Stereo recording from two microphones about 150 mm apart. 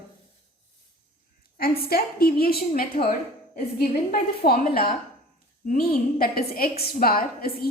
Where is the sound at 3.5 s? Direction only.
80° left.